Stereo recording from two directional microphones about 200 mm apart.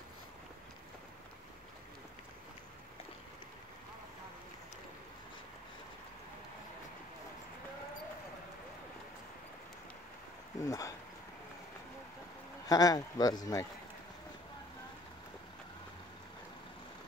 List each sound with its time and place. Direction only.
10.6 s speech: 15° left (ahead or behind)
12.6 s speech: 20° left (ahead or behind)